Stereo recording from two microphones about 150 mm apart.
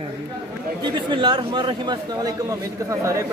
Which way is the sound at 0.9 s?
30° right (ahead or behind).